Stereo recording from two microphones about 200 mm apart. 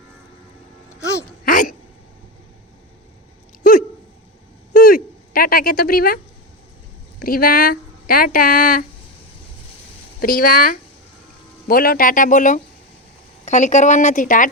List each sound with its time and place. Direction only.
1.5 s hiccup: 40° left (ahead or behind)
3.6 s dog: 45° left (ahead or behind)
4.7 s a sound: 45° left (ahead or behind)
7.2 s speech: 45° left (ahead or behind)
10.2 s a woman's voice: 45° left (ahead or behind)